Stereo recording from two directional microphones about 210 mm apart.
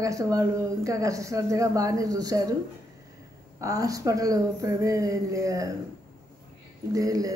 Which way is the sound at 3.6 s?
15° right (ahead or behind).